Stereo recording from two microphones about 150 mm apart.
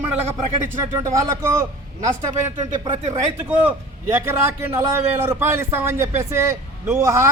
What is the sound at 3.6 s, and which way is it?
A man's voice, 15° right (ahead or behind).